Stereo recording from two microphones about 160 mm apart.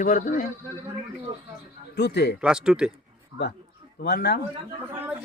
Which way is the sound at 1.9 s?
90° left.